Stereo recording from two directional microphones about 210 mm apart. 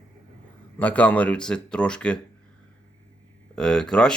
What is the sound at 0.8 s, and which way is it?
Speech, 5° left (ahead or behind).